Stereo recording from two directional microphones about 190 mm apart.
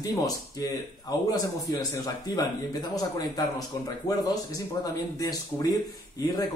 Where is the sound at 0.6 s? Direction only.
20° left (ahead or behind).